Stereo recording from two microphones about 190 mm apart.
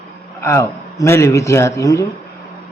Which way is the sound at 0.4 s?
15° left (ahead or behind).